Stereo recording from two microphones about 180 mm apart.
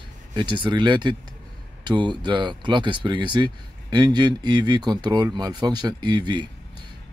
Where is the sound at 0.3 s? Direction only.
25° right (ahead or behind).